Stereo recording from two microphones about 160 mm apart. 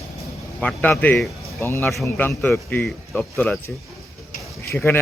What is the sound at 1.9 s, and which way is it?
A man's voice, centre (ahead or behind).